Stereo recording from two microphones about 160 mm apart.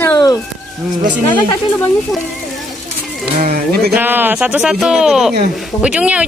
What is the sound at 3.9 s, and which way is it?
Speech, 10° right (ahead or behind).